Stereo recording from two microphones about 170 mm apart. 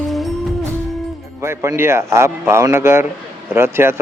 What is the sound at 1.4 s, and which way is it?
A man's voice, 15° right (ahead or behind).